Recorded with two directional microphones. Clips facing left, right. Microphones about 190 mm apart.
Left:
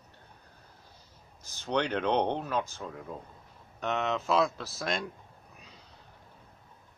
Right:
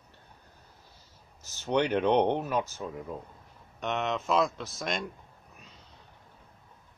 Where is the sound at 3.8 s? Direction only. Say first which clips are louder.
Even; centre (ahead or behind).